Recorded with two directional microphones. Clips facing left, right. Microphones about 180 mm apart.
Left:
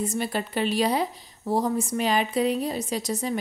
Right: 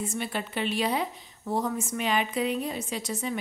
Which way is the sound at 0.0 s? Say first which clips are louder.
Left 4 dB; 40° left (ahead or behind).